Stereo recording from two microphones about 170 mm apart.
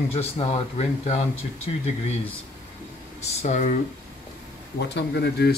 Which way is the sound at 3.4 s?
45° left (ahead or behind).